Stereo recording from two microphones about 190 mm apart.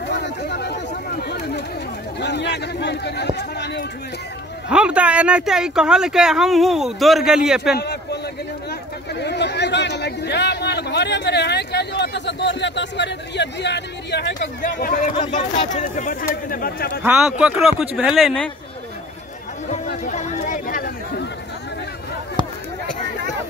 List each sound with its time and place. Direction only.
0.1 s chatter: 65° left (ahead or behind)
1.2 s a sound: 55° left (ahead or behind)
4.6 s speech: 5° right (ahead or behind)
7.7 s a sound: 60° left (ahead or behind)
9.1 s chatter: 65° left (ahead or behind)
14.6 s speech: 45° left (ahead or behind)
17.0 s speech: 5° right (ahead or behind)
20.1 s chatter: 40° left (ahead or behind)